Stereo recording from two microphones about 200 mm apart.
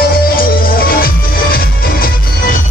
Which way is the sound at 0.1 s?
45° left (ahead or behind).